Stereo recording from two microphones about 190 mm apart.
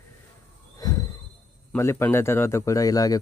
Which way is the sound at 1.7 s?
15° left (ahead or behind).